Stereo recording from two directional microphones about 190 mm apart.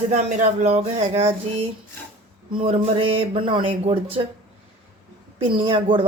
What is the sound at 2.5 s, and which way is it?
A woman's voice, 30° right (ahead or behind).